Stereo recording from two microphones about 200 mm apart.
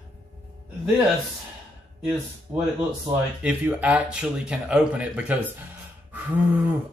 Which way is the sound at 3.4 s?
5° right (ahead or behind).